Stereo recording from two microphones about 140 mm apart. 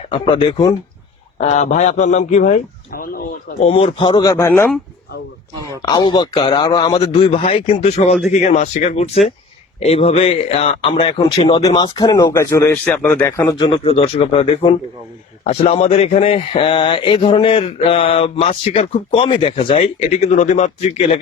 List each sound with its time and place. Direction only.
0.1 s a man's voice: 35° left (ahead or behind)
1.4 s a man's voice: 55° left (ahead or behind); by 3.1 s 80° left
3.6 s a man's voice: 40° left (ahead or behind); by 4.7 s 15° left (ahead or behind)
5.8 s a man's voice: 30° left (ahead or behind); by 9.0 s 60° left (ahead or behind)
9.8 s speech: 45° left (ahead or behind)
10.8 s a man's voice: 35° left (ahead or behind)
12.7 s speech: 10° left (ahead or behind)
13.7 s a man's voice: 40° left (ahead or behind)